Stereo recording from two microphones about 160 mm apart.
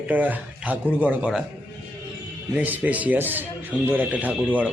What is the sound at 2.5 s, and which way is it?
Speech, 10° right (ahead or behind).